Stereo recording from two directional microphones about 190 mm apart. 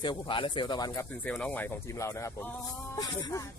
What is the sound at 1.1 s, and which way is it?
Speech, 5° left (ahead or behind).